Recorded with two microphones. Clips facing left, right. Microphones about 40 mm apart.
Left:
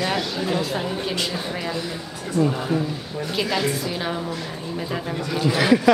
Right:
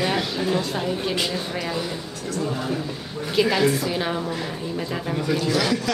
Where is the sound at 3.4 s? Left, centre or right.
Centre.